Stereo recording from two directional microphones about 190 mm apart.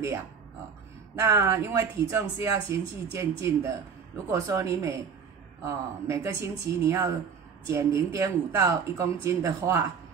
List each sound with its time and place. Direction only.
1.1 s speech: 15° right (ahead or behind)